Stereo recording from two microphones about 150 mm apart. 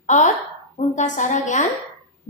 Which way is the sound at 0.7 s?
55° left (ahead or behind).